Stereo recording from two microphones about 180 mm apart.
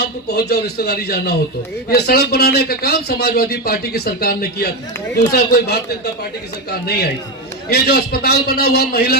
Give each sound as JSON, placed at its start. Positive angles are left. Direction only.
{"t": 0.0, "sound": "speech", "side_deg": 65}